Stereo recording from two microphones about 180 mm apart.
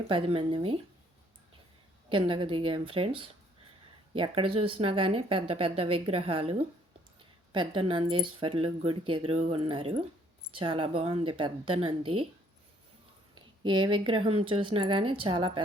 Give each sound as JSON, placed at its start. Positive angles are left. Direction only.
{"t": 0.1, "sound": "speech", "side_deg": -30}
{"t": 2.0, "sound": "speech", "side_deg": -30}
{"t": 13.3, "sound": "speech", "side_deg": -25}